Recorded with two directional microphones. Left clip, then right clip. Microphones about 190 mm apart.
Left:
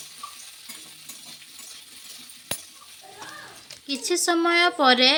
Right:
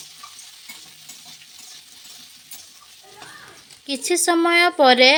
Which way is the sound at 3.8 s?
30° right (ahead or behind).